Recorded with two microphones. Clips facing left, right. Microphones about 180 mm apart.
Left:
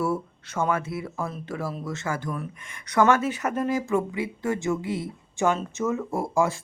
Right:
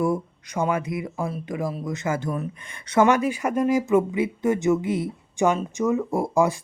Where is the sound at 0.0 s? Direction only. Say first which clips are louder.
Right 3 dB; 15° right (ahead or behind).